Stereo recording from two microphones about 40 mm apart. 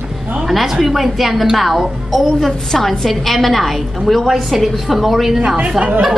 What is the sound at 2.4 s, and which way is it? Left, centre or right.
A woman's voice, centre.